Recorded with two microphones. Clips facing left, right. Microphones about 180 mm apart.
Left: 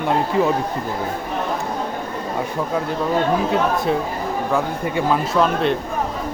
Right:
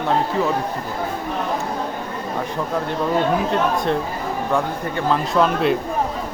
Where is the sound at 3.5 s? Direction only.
5° left (ahead or behind).